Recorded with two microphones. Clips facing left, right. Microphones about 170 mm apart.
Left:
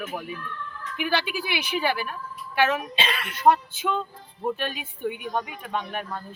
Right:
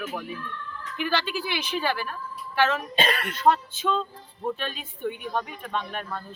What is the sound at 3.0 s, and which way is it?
Speech, 45° right (ahead or behind).